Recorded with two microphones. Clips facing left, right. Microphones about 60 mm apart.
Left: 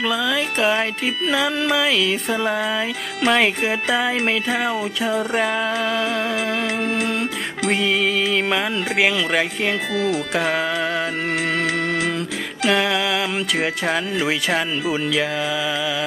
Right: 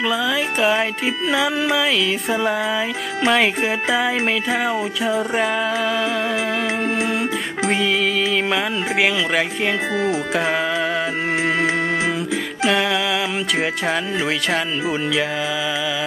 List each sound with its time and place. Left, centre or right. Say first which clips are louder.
0.0 s music: right 1 dB; centre
7.7 s music: even; centre
12.6 s music: even; centre